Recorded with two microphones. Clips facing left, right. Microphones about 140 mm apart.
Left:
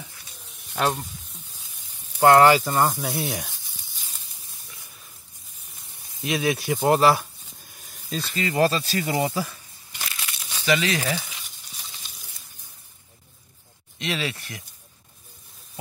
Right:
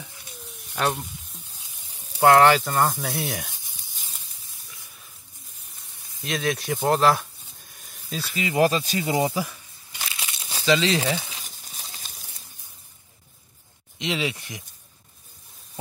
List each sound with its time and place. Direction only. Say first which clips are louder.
0.7 s sizzle: left 1 dB; 5° left (ahead or behind)
2.1 s speech: left 1 dB; centre (ahead or behind)
6.2 s speech: left 2 dB; 5° left (ahead or behind); by 9.6 s 15° right (ahead or behind)
10.0 s crumpling: even; 20° right (ahead or behind)
10.5 s a sound: right 2 dB; 25° right (ahead or behind)
13.9 s speech: right 2 dB; 20° right (ahead or behind)